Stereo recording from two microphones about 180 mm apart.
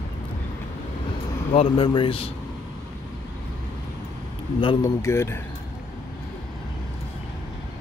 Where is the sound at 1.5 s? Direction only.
30° left (ahead or behind).